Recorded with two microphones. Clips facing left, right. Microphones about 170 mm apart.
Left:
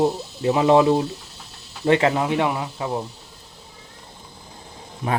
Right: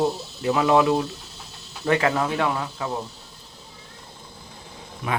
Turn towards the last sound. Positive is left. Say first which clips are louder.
# left 3 dB
turn(degrees=30)  # may be behind; listen again after turning